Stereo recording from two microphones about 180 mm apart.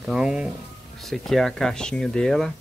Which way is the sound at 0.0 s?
5° right (ahead or behind).